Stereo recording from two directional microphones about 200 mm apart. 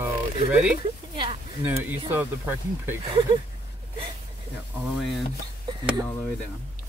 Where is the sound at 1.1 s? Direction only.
25° right (ahead or behind).